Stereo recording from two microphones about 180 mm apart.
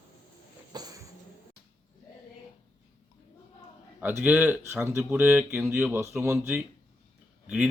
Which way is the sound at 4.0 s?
10° right (ahead or behind).